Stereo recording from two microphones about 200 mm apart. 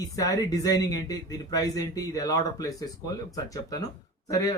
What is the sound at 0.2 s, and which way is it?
Speech, 15° left (ahead or behind).